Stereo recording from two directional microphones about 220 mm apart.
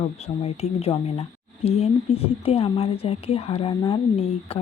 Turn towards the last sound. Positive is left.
turn(degrees=25)  # may be behind; listen again after turning